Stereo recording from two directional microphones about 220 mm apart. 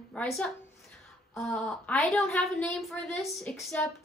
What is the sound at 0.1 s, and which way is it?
A woman's voice, 5° left (ahead or behind).